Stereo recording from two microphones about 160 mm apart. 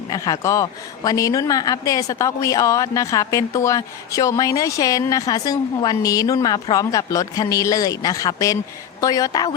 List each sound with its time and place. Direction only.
0.1 s speech: 20° left (ahead or behind)